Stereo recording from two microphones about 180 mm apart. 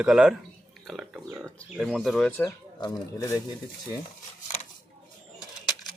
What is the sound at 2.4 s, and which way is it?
Speech, 20° left (ahead or behind).